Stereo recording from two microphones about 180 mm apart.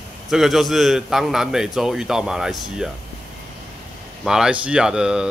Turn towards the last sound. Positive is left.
turn(degrees=-5)  # may be behind; listen again after turning